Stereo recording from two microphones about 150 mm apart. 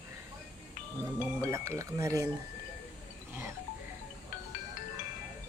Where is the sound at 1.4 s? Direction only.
20° right (ahead or behind).